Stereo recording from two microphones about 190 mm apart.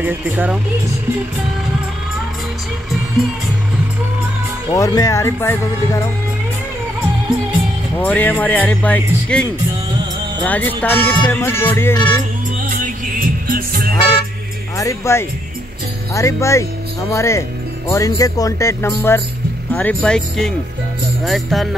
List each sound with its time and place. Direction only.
0.0 s speech: 10° right (ahead or behind)
4.7 s music: 15° left (ahead or behind)
7.9 s music: 10° left (ahead or behind)
12.6 s music: 45° right (ahead or behind)
13.9 s music: 30° left (ahead or behind)
14.8 s music: 15° left (ahead or behind)
19.7 s speech: 10° left (ahead or behind)